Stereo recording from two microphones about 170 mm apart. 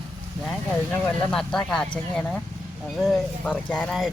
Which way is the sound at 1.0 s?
10° left (ahead or behind).